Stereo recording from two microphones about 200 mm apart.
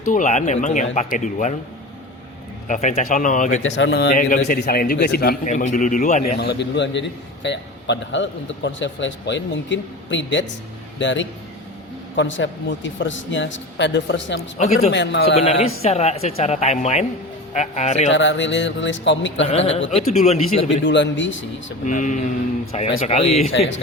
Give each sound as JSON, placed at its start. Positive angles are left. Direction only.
{"t": 0.0, "sound": "speech", "side_deg": 40}
{"t": 2.6, "sound": "speech", "side_deg": 35}
{"t": 3.6, "sound": "a man's voice", "side_deg": 65}
{"t": 5.5, "sound": "speech", "side_deg": 40}
{"t": 6.4, "sound": "a man's voice", "side_deg": 60}
{"t": 15.4, "sound": "speech", "side_deg": 30}
{"t": 18.1, "sound": "a man's voice", "side_deg": 65}
{"t": 19.5, "sound": "speech", "side_deg": 30}
{"t": 20.8, "sound": "a man's voice", "side_deg": 65}
{"t": 21.8, "sound": "speech", "side_deg": 40}